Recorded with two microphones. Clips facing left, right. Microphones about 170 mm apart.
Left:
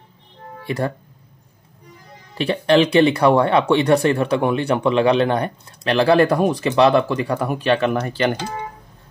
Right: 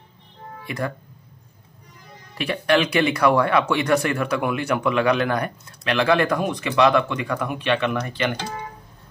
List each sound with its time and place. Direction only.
0.7 s speech: 30° left (ahead or behind)
2.3 s speech: 30° left (ahead or behind)